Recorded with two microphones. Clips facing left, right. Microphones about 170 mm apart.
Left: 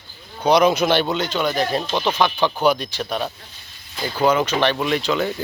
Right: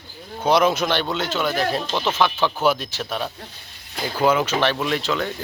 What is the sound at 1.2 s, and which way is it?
Speech, 5° right (ahead or behind).